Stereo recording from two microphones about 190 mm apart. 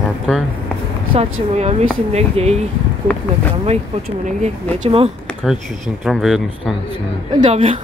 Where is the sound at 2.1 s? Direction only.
35° right (ahead or behind).